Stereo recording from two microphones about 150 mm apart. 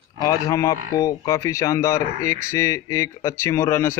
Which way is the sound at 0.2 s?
25° left (ahead or behind).